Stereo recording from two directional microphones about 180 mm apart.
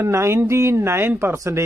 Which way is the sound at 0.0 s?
15° right (ahead or behind).